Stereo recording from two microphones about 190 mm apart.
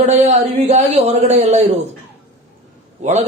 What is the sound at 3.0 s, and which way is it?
Speech, 35° right (ahead or behind).